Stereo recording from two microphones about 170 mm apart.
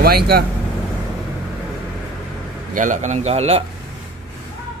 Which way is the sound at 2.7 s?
50° right (ahead or behind).